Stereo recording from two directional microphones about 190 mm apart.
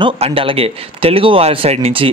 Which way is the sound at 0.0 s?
30° right (ahead or behind).